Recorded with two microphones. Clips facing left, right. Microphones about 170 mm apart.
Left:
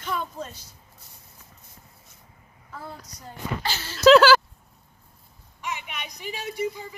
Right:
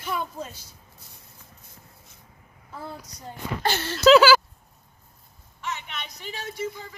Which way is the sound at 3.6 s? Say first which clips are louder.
Right 6 dB; 55° right (ahead or behind).